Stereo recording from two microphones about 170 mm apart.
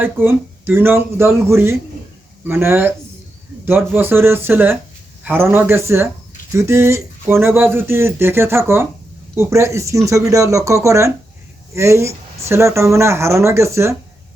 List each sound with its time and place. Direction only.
0.0 s speech: 10° right (ahead or behind)